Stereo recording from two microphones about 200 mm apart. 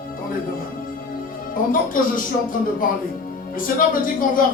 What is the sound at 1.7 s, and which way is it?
Speech, 45° left (ahead or behind).